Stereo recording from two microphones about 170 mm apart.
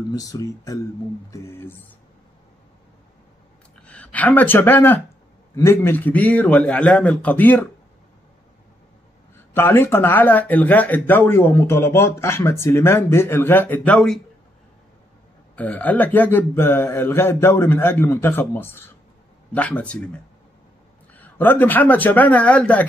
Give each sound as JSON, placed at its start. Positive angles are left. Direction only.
{"t": 0.1, "sound": "speech", "side_deg": 20}
{"t": 3.8, "sound": "speech", "side_deg": 5}
{"t": 9.5, "sound": "speech", "side_deg": 15}
{"t": 15.5, "sound": "speech", "side_deg": 10}